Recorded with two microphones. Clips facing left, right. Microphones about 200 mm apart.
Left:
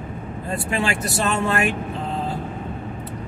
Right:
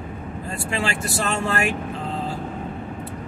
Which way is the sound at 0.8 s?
20° left (ahead or behind).